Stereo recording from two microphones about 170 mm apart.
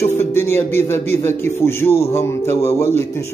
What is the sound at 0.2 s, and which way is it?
A man's voice, 15° left (ahead or behind).